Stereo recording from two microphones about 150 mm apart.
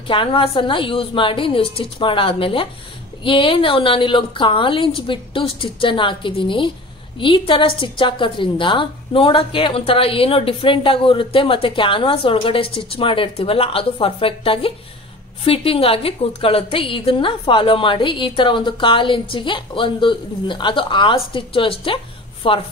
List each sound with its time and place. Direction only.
0.1 s a woman's voice: 35° left (ahead or behind)